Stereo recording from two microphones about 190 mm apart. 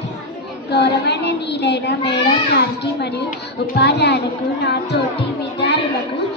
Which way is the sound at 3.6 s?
60° left (ahead or behind).